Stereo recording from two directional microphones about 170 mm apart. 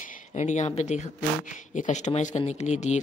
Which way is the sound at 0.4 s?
40° left (ahead or behind).